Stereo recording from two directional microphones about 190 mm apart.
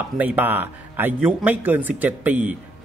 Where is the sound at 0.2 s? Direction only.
10° right (ahead or behind).